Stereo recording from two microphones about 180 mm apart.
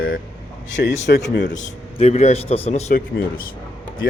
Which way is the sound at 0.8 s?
65° left (ahead or behind).